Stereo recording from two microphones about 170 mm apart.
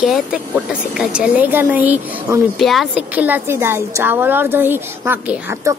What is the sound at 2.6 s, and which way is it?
Speech, centre (ahead or behind).